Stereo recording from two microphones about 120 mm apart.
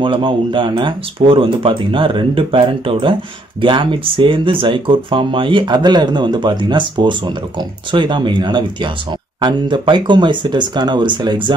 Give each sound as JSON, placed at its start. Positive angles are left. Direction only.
{"t": 0.0, "sound": "speech", "side_deg": -45}